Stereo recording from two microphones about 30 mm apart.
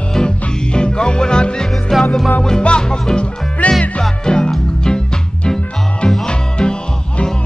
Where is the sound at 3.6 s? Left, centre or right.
Left.